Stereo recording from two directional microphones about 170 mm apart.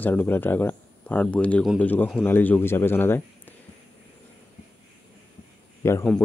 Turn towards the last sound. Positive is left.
turn(degrees=15)  # may be behind; listen again after turning